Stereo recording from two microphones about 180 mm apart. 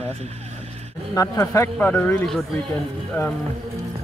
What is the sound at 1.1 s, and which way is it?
Speech, 15° left (ahead or behind).